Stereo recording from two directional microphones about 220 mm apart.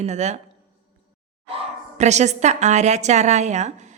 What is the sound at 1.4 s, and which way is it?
A woman's voice, 30° right (ahead or behind).